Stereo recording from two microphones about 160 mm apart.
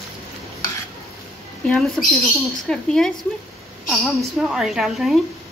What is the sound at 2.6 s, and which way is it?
A woman's voice, 5° left (ahead or behind).